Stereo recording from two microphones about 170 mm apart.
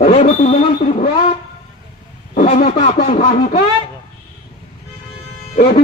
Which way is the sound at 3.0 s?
35° left (ahead or behind).